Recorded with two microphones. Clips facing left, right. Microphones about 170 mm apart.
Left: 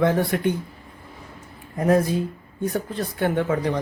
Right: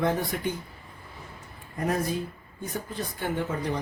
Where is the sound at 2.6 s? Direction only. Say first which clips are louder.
Left 8 dB; 65° left (ahead or behind).